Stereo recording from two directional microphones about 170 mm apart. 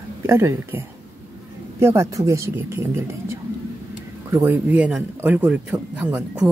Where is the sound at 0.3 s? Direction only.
15° right (ahead or behind).